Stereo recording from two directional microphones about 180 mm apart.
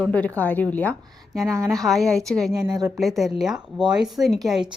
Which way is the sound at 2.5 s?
20° right (ahead or behind).